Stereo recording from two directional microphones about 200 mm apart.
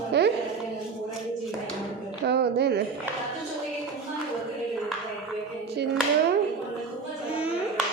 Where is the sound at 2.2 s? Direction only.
55° right (ahead or behind).